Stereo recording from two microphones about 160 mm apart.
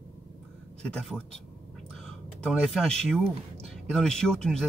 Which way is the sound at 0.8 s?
5° left (ahead or behind).